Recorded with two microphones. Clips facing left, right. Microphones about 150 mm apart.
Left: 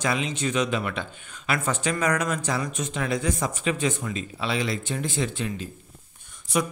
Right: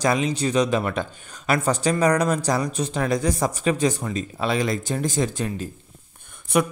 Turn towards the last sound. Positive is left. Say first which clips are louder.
# right 5 dB
turn(degrees=-60)  # may be behind; listen again after turning